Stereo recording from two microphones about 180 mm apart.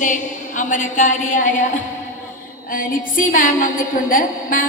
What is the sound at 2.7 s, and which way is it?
A woman's voice, 50° left (ahead or behind).